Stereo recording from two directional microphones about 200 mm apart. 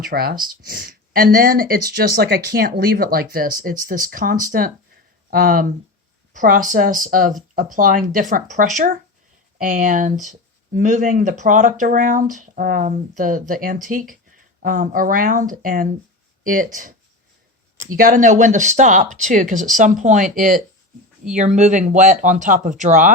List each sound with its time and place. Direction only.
0.1 s speech: 50° right (ahead or behind)